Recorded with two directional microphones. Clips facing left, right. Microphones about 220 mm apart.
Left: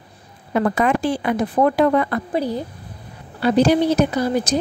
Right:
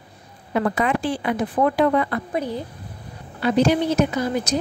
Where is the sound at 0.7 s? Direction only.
45° left (ahead or behind).